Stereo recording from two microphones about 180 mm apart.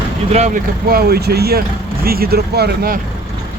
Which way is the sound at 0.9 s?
60° right (ahead or behind).